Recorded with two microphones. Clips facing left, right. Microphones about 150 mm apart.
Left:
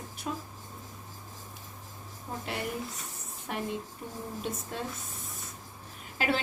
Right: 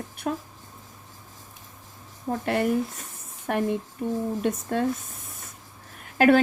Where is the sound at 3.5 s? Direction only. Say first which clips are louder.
Right 9 dB; 55° right (ahead or behind).